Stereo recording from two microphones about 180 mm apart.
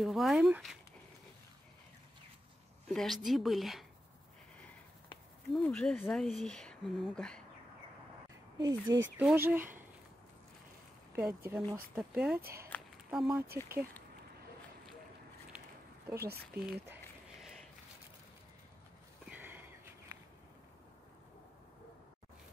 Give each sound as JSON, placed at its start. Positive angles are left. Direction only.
{"t": 0.0, "sound": "speech", "side_deg": 0}
{"t": 2.9, "sound": "speech", "side_deg": 0}
{"t": 5.5, "sound": "speech", "side_deg": 5}
{"t": 8.5, "sound": "speech", "side_deg": -25}
{"t": 9.1, "sound": "speech", "side_deg": -10}
{"t": 11.1, "sound": "speech", "side_deg": -10}
{"t": 12.7, "sound": "a sound", "side_deg": 10}
{"t": 13.1, "sound": "speech", "side_deg": -5}
{"t": 16.2, "sound": "speech", "side_deg": -60}
{"t": 16.8, "sound": "a sound", "side_deg": -10}
{"t": 19.2, "sound": "a sound", "side_deg": -10}